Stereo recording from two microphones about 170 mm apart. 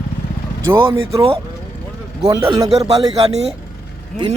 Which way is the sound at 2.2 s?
20° right (ahead or behind).